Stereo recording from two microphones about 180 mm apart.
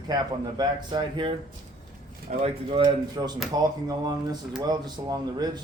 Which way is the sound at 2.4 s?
30° right (ahead or behind).